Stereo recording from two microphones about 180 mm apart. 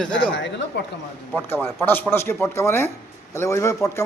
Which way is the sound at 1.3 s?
10° left (ahead or behind).